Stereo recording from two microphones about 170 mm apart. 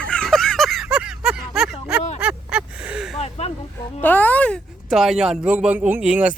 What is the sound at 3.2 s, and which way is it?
Speech, 35° left (ahead or behind).